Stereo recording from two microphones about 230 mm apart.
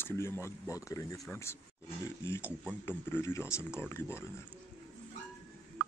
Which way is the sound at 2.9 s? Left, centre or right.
Centre.